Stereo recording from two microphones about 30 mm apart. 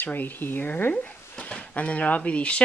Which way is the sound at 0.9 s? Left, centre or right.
Left.